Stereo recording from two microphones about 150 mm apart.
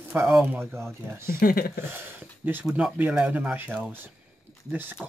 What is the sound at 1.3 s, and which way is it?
Speech, 75° left (ahead or behind).